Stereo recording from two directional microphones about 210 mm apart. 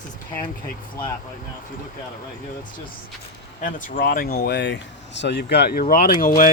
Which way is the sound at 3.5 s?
40° left (ahead or behind).